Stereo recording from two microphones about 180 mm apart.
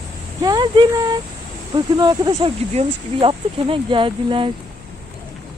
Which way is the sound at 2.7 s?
35° right (ahead or behind).